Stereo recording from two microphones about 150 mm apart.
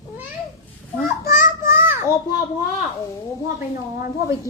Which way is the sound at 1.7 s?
15° right (ahead or behind).